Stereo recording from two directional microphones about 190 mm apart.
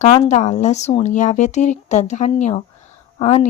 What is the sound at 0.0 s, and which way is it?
Speech, 35° left (ahead or behind).